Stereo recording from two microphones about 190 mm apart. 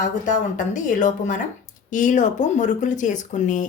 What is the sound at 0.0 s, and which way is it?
Speech, 40° left (ahead or behind).